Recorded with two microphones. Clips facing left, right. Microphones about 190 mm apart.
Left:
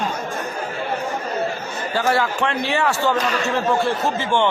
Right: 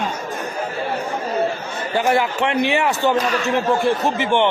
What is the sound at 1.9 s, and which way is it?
A man's voice, 15° right (ahead or behind).